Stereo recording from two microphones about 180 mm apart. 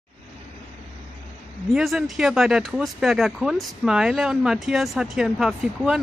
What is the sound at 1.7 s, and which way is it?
Speech, centre (ahead or behind).